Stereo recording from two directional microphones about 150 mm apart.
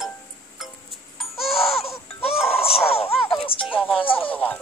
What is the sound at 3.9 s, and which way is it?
Music, 35° left (ahead or behind).